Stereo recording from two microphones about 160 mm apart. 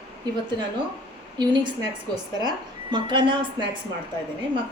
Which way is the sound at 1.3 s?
30° right (ahead or behind).